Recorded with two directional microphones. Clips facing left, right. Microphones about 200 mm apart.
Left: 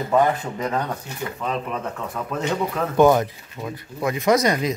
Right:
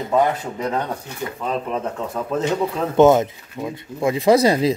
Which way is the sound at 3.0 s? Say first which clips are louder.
Right 3 dB; 20° right (ahead or behind).